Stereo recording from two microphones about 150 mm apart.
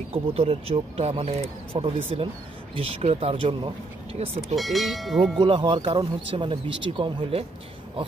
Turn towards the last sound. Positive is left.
turn(degrees=-35)  # may be behind; listen again after turning